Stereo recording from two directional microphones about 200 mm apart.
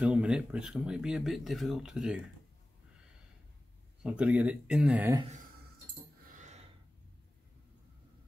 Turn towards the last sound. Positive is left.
turn(degrees=-35)  # may be behind; listen again after turning